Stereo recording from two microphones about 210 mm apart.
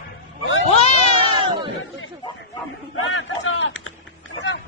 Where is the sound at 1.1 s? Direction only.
25° right (ahead or behind).